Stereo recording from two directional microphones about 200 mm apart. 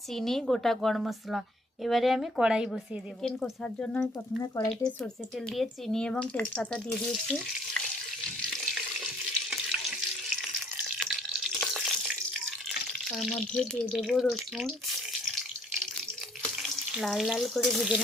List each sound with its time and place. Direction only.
0.1 s a woman's voice: centre (ahead or behind)
4.6 s speech: 15° left (ahead or behind)
5.5 s a woman's voice: 5° left (ahead or behind)
7.3 s frying: 5° left (ahead or behind)
11.6 s water: centre (ahead or behind)
16.4 s water tap: centre (ahead or behind)